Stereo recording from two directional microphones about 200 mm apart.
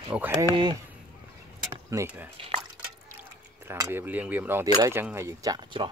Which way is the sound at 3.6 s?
15° right (ahead or behind).